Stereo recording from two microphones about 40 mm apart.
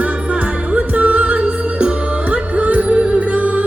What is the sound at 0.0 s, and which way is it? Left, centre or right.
Music, right.